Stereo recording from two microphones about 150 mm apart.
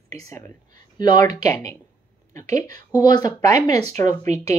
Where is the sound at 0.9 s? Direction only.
30° left (ahead or behind).